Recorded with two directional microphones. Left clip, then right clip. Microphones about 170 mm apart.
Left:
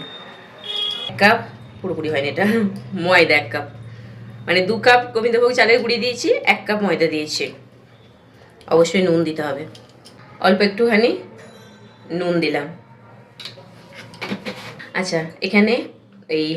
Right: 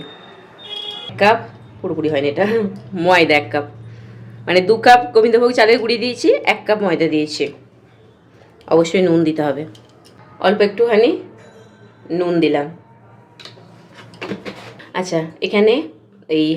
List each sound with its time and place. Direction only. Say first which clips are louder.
2.0 s speech: right 3 dB; 55° right (ahead or behind)
8.7 s speech: right 2 dB; 50° right (ahead or behind)
14.9 s a woman's voice: right 2 dB; 55° right (ahead or behind)